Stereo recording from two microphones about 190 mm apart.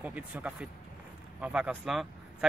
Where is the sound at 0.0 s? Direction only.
10° right (ahead or behind).